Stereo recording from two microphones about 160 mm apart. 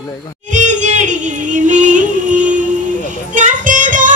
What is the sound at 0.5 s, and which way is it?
Music, 50° right (ahead or behind).